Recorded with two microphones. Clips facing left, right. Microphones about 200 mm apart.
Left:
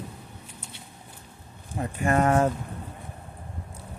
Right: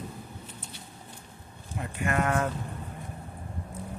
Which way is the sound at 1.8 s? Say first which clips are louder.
Left 5 dB; 40° left (ahead or behind).